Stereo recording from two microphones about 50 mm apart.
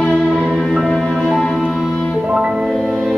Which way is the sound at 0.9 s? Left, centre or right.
Centre.